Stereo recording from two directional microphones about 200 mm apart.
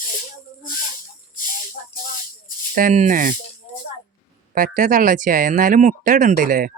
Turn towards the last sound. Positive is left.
turn(degrees=-45)  # may be behind; listen again after turning